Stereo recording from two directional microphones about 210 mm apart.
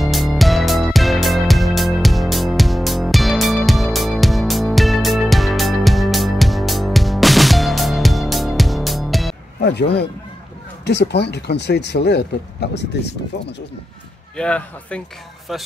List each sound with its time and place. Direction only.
0.0 s music: centre (ahead or behind)
9.6 s a sound: 55° left (ahead or behind)
10.9 s speech: 50° left (ahead or behind)
14.3 s speech: 5° left (ahead or behind)